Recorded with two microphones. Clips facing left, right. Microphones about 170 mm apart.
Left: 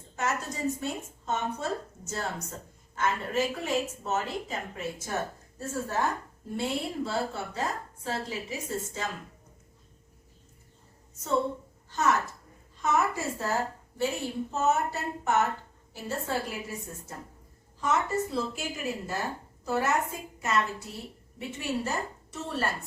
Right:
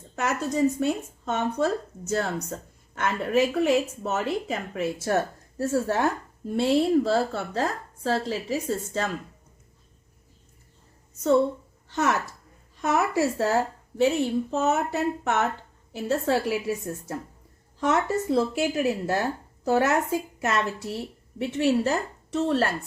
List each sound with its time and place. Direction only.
0.2 s speech: 70° right (ahead or behind)
11.9 s a woman's voice: 70° right (ahead or behind)